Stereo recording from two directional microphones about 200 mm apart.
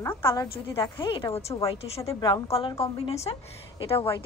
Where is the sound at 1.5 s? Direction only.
15° left (ahead or behind).